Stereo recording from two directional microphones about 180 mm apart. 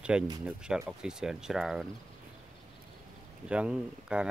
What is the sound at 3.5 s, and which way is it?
Speech, 5° right (ahead or behind).